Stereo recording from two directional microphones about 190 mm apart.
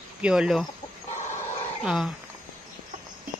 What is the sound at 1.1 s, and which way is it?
Chicken, 35° left (ahead or behind).